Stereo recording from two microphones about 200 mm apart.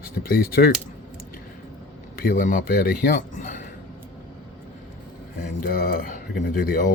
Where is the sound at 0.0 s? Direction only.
45° left (ahead or behind).